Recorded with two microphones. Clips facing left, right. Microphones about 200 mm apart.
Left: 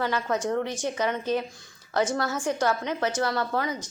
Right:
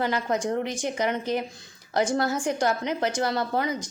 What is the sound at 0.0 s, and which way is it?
A woman's voice, 15° right (ahead or behind).